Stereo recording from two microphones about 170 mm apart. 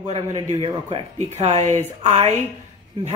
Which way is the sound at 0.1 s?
40° right (ahead or behind).